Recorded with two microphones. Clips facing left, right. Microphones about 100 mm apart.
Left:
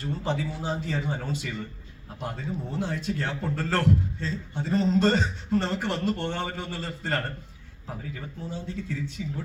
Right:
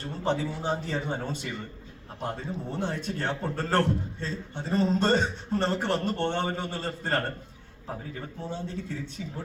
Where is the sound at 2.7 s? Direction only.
25° right (ahead or behind).